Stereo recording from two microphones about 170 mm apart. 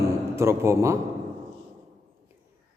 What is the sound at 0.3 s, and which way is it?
Speech, 15° right (ahead or behind).